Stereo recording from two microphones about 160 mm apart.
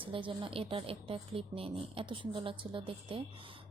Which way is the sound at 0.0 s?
35° right (ahead or behind).